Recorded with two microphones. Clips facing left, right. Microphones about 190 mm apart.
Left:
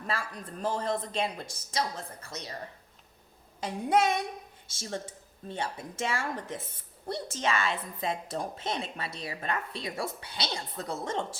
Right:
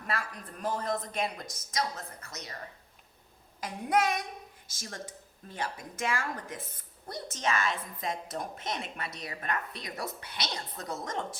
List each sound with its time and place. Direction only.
0.1 s a woman's voice: 30° left (ahead or behind)
3.6 s a woman's voice: 30° left (ahead or behind)